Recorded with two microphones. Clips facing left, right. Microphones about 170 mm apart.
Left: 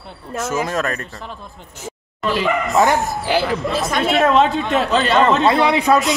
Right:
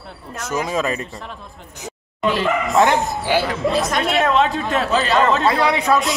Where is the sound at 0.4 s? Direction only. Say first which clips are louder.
Left 1 dB; 5° left (ahead or behind).